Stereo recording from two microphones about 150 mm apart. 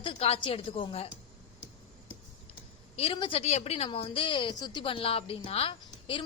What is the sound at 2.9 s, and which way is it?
A woman's voice, 40° left (ahead or behind).